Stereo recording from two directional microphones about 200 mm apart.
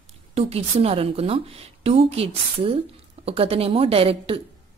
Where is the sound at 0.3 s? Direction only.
30° right (ahead or behind).